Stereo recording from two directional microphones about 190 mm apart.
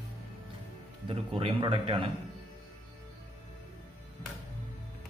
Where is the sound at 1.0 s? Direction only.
30° right (ahead or behind).